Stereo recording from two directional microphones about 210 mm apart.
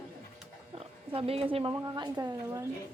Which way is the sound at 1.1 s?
25° right (ahead or behind).